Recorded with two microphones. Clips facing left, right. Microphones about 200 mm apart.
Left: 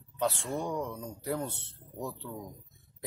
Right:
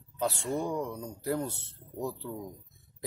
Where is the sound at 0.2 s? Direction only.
Centre (ahead or behind).